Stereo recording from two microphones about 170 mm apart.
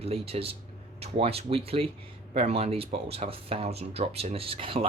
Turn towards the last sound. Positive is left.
turn(degrees=-30)  # may be behind; listen again after turning